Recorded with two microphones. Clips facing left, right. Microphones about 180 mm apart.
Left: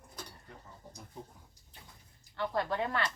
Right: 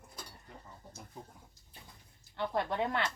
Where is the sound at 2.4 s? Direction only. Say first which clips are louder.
Even; 20° right (ahead or behind).